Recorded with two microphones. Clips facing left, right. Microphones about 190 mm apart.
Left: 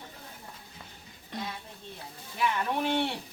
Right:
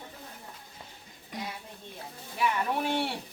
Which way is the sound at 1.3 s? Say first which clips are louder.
Left 1 dB; 10° right (ahead or behind).